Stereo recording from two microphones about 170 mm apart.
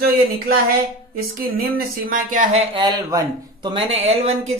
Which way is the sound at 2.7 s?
25° right (ahead or behind).